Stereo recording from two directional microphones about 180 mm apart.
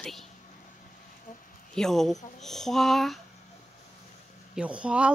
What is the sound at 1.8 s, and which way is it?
Speech, centre (ahead or behind).